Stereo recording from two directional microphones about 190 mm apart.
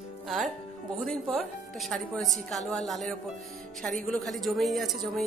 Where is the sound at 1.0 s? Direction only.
Centre (ahead or behind).